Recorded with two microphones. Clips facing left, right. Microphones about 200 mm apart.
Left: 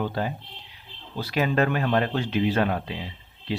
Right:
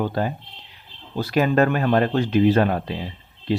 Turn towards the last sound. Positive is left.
turn(degrees=-45)  # may be behind; listen again after turning